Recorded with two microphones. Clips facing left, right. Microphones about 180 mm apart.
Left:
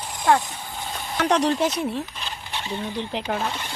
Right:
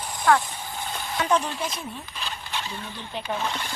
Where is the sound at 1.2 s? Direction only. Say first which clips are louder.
Left 5 dB; 80° left.